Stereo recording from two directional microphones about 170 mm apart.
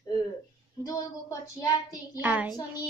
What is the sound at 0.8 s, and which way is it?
Speech, 20° left (ahead or behind).